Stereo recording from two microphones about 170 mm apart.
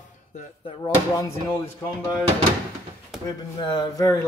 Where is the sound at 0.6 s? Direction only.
30° left (ahead or behind).